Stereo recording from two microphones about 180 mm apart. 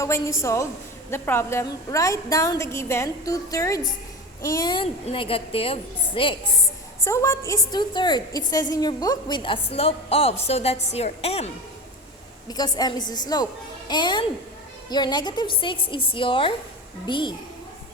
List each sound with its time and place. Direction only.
0.0 s a woman's voice: 15° left (ahead or behind)
7.0 s a woman's voice: 15° left (ahead or behind); by 11.5 s 35° left (ahead or behind)
12.5 s a woman's voice: 20° left (ahead or behind)